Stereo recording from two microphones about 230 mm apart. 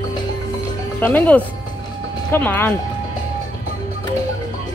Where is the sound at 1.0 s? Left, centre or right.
Centre.